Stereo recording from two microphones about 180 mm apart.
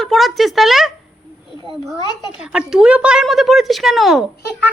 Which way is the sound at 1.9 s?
25° left (ahead or behind).